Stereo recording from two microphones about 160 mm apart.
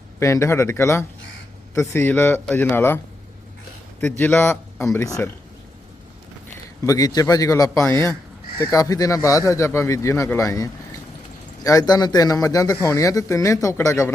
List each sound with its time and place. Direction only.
0.2 s a man's voice: 20° left (ahead or behind)
4.2 s a man's voice: 10° left (ahead or behind)
6.8 s a man's voice: 20° left (ahead or behind)